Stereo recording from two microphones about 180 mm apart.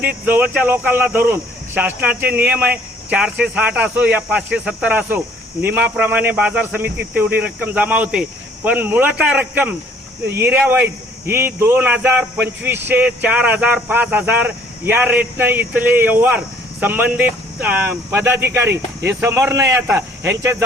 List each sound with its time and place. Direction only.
0.3 s speech: 10° right (ahead or behind)